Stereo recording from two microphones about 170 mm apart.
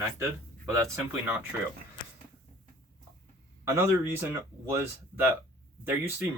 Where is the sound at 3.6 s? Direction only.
15° right (ahead or behind).